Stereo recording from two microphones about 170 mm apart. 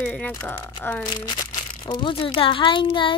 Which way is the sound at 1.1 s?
25° left (ahead or behind).